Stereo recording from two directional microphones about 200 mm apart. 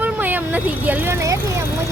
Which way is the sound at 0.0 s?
10° right (ahead or behind).